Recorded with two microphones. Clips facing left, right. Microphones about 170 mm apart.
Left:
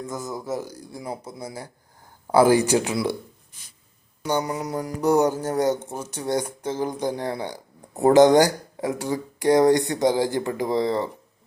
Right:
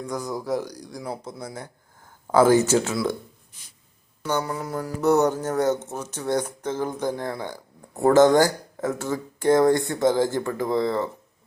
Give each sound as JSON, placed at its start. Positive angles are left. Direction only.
{"t": 0.0, "sound": "speech", "side_deg": 0}
{"t": 4.3, "sound": "speech", "side_deg": 15}